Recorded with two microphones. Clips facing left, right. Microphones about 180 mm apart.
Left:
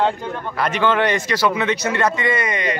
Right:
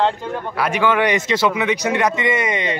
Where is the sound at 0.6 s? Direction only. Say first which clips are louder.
Right 1 dB; 10° right (ahead or behind).